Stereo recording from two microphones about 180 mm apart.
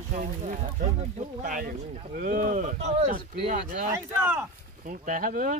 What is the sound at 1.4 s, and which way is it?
Speech, 50° right (ahead or behind).